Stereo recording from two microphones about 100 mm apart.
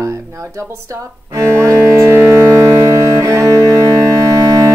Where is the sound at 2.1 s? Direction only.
25° right (ahead or behind).